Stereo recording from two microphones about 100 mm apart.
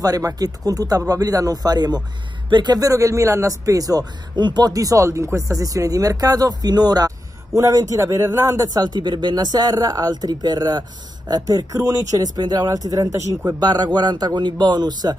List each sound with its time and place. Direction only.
0.0 s a man's voice: 35° right (ahead or behind)
13.5 s speech: 40° right (ahead or behind)